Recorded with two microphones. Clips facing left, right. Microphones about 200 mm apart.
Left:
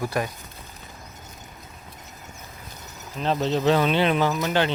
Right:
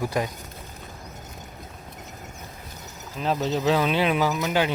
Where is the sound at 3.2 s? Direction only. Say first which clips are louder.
Left 1 dB; 5° right (ahead or behind).